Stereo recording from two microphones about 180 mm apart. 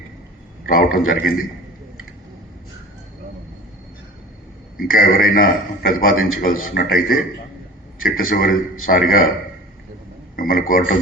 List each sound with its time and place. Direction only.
0.6 s a man's voice: 50° left (ahead or behind)
4.8 s a man's voice: 55° left (ahead or behind)
10.3 s a man's voice: 50° left (ahead or behind)